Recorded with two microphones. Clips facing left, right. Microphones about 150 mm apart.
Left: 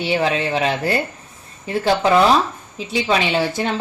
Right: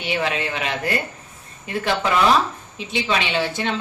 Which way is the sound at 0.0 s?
30° left (ahead or behind).